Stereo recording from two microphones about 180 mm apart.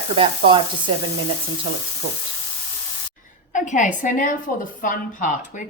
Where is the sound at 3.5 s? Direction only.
45° left (ahead or behind).